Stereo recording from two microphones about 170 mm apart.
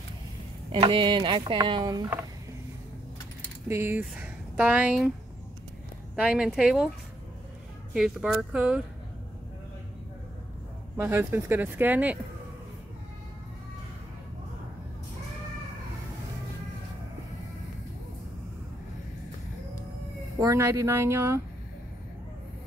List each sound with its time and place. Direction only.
0.7 s speech: 30° right (ahead or behind)
3.6 s speech: 15° right (ahead or behind)
6.1 s speech: 5° right (ahead or behind)
7.9 s speech: 5° right (ahead or behind)
11.0 s speech: 10° right (ahead or behind)
20.3 s speech: 20° right (ahead or behind)